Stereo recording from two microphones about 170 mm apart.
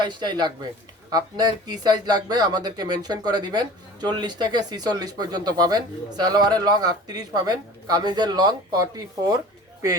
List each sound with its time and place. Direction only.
0.0 s speech: 25° right (ahead or behind)